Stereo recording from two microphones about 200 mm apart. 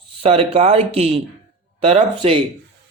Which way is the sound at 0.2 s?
30° right (ahead or behind).